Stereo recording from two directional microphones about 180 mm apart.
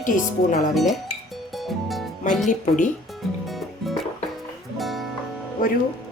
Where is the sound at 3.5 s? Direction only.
Centre (ahead or behind).